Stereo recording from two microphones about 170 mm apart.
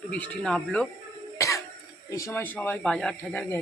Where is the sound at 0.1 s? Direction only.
5° left (ahead or behind).